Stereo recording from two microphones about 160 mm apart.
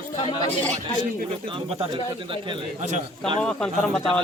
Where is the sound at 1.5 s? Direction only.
35° right (ahead or behind).